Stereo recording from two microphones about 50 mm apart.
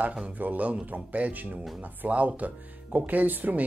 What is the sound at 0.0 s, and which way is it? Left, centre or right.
A man's voice, right.